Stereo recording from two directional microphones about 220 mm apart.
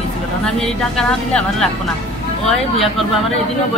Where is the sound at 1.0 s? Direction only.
5° left (ahead or behind).